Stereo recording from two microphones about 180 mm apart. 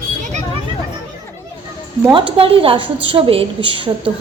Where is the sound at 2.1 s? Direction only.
30° right (ahead or behind).